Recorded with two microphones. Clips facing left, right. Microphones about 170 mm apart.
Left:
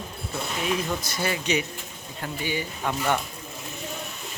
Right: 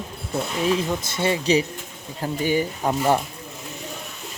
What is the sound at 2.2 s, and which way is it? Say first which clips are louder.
Speech: right 8 dB; 40° right (ahead or behind).